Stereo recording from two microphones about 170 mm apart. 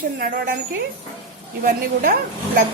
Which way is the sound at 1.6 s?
55° right (ahead or behind).